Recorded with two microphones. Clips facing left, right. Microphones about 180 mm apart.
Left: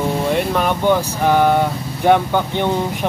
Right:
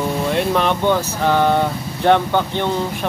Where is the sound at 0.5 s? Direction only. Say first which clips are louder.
Even; 10° left (ahead or behind).